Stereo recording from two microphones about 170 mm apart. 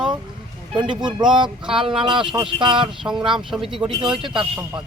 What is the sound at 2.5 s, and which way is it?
Speech, 30° right (ahead or behind).